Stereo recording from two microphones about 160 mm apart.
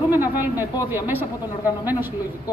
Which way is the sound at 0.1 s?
15° right (ahead or behind).